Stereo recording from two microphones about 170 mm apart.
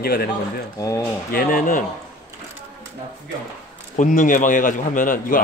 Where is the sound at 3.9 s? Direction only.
50° left (ahead or behind).